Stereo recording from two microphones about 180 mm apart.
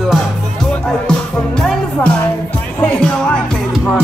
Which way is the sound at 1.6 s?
5° left (ahead or behind).